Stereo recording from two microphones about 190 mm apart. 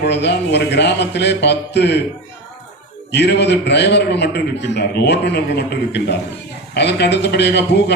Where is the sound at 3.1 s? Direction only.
65° left (ahead or behind).